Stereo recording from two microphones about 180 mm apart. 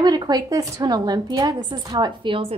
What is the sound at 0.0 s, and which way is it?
A woman's voice, 20° right (ahead or behind).